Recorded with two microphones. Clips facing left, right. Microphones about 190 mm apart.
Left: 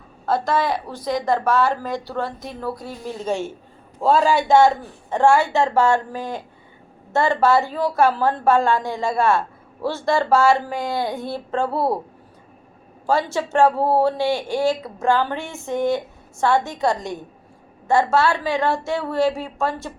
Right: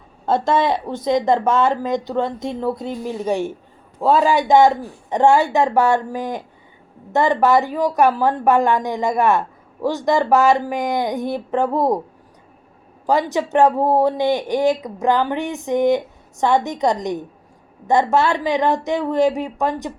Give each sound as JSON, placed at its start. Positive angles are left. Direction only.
{"t": 0.3, "sound": "a woman's voice", "side_deg": -25}
{"t": 13.1, "sound": "a woman's voice", "side_deg": -15}